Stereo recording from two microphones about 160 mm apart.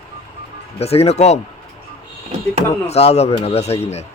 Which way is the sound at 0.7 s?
40° left (ahead or behind).